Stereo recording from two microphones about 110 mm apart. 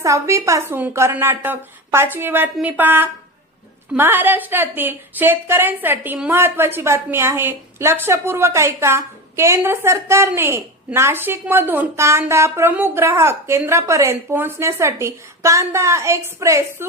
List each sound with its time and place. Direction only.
0.0 s a woman's voice: 30° right (ahead or behind)